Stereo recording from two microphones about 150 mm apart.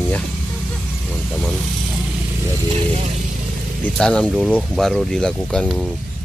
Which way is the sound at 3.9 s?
5° left (ahead or behind).